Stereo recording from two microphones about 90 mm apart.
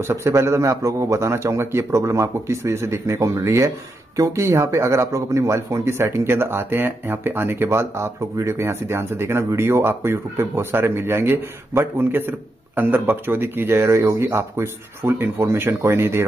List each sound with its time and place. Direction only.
0.0 s a man's voice: 30° right (ahead or behind)